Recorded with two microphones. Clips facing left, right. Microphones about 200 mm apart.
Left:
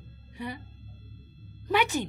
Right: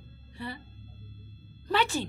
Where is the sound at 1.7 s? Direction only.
15° left (ahead or behind).